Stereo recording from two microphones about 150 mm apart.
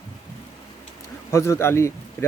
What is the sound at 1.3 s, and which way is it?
Speech, 20° left (ahead or behind).